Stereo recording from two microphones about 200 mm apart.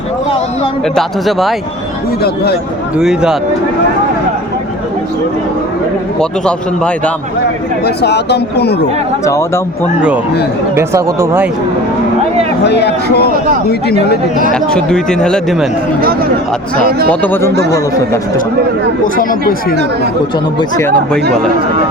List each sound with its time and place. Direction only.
0.9 s speech: centre (ahead or behind)
2.2 s speech: 50° left (ahead or behind)
3.0 s speech: 5° right (ahead or behind)
6.1 s speech: 5° left (ahead or behind)
7.9 s speech: 55° left (ahead or behind)
9.2 s speech: 15° left (ahead or behind)
10.8 s speech: 15° right (ahead or behind)
12.6 s speech: 55° left (ahead or behind)
14.5 s speech: 5° left (ahead or behind)
17.1 s speech: 10° left (ahead or behind)
17.5 s speech: 55° right (ahead or behind)
19.0 s speech: 45° left (ahead or behind)
20.6 s speech: 15° left (ahead or behind)